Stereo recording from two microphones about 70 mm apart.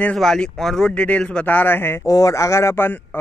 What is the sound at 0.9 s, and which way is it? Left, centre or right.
A man's voice, centre.